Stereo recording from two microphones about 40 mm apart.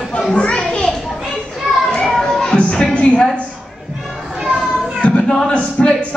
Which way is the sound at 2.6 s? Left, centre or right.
Centre.